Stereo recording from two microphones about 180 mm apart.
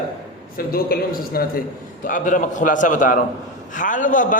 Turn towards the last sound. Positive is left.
turn(degrees=45)  # may be behind; listen again after turning